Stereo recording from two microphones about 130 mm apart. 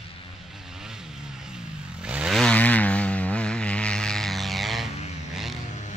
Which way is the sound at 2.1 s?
10° right (ahead or behind).